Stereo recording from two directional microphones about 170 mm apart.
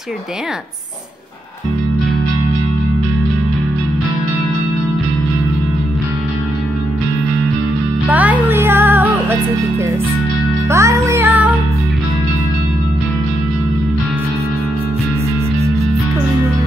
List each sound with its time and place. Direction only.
8.1 s music: 10° right (ahead or behind)
10.7 s music: 15° right (ahead or behind)